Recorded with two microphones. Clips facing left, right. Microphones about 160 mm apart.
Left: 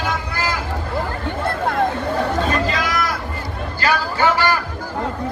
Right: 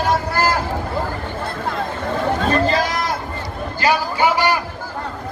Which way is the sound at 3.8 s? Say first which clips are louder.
Right 1 dB; 15° right (ahead or behind).